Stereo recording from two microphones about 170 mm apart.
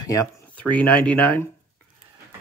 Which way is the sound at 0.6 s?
5° left (ahead or behind).